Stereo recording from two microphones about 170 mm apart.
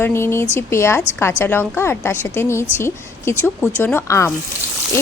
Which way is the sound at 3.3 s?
10° right (ahead or behind).